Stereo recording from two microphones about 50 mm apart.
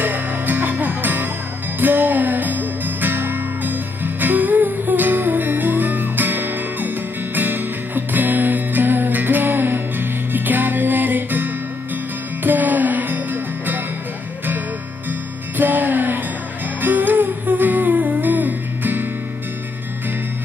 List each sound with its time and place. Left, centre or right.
0.0 s music: right
15.0 s music: right
16.8 s humming: right